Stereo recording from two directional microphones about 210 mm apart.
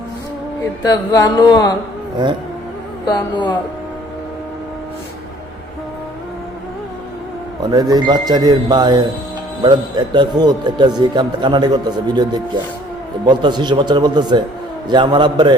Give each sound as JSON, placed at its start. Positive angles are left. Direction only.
{"t": 0.8, "sound": "a sound", "side_deg": 15}
{"t": 3.1, "sound": "speech", "side_deg": 20}
{"t": 7.7, "sound": "a man's voice", "side_deg": -20}